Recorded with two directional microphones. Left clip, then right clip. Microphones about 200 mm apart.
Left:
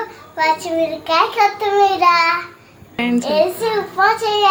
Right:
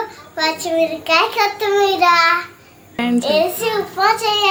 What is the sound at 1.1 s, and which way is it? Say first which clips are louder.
A child's voice: left 2 dB; 10° right (ahead or behind).